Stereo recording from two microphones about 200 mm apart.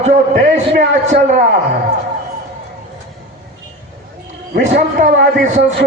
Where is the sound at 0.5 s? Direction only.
35° right (ahead or behind).